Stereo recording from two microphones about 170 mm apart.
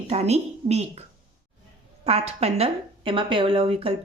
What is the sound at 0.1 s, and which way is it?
Speech, 40° right (ahead or behind).